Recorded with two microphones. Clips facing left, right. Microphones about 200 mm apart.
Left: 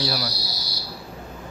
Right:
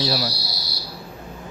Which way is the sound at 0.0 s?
25° right (ahead or behind).